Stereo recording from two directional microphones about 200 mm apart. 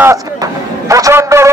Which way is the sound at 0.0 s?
15° right (ahead or behind).